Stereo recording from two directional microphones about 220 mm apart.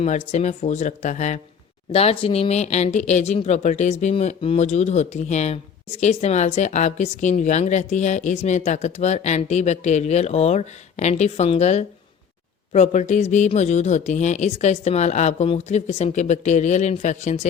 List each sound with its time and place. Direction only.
0.0 s speech: 30° left (ahead or behind)